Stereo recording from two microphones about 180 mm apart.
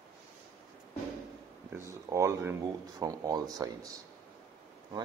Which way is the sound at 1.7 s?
15° right (ahead or behind).